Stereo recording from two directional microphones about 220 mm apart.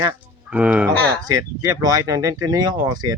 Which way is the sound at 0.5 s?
5° right (ahead or behind).